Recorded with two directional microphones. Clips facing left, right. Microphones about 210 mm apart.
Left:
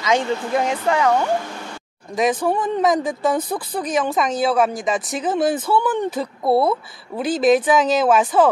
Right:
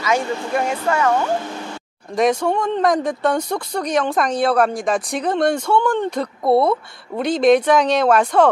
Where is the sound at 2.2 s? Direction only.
Centre (ahead or behind).